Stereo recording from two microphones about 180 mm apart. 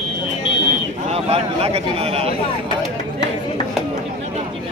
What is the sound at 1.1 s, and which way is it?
Speech, 35° right (ahead or behind).